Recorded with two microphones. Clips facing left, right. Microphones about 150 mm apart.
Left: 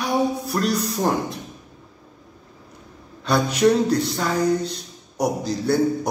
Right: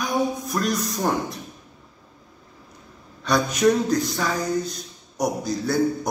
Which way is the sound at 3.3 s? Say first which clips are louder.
Left 1 dB; 30° left (ahead or behind).